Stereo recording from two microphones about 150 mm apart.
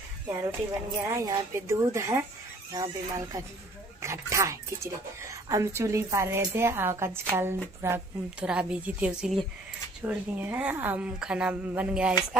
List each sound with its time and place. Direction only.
1.0 s speech: 20° right (ahead or behind); by 12.2 s 5° right (ahead or behind)